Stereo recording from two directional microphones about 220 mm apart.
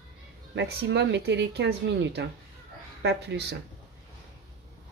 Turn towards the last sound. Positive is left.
turn(degrees=-50)  # may be behind; listen again after turning